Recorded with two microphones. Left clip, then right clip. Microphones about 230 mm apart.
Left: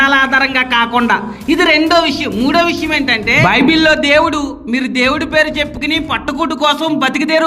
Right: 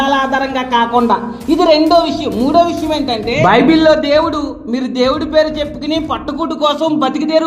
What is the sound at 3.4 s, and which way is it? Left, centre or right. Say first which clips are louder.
A man's voice: right 5 dB; left.